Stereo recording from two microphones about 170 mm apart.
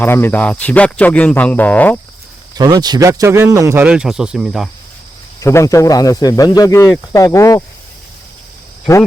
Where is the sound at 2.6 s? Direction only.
20° right (ahead or behind).